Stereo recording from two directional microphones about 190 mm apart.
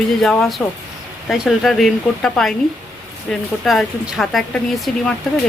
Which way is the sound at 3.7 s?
Centre (ahead or behind).